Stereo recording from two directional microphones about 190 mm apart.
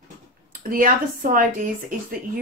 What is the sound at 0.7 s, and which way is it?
Speech, 50° right (ahead or behind).